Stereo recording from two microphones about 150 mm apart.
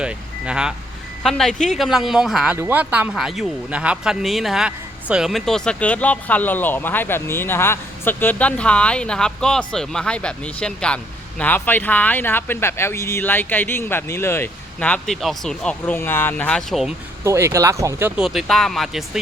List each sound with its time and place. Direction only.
0.0 s vehicle: 5° right (ahead or behind)
1.2 s speech: 5° left (ahead or behind)
17.2 s speech: 20° right (ahead or behind)
18.2 s speech: centre (ahead or behind)